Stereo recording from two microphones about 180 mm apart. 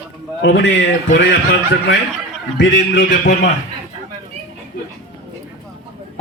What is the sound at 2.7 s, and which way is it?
Speech, 65° left (ahead or behind).